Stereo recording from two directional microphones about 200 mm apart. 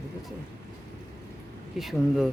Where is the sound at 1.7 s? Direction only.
Centre (ahead or behind).